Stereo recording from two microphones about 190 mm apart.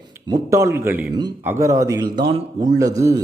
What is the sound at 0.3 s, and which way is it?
A man's voice, 15° right (ahead or behind).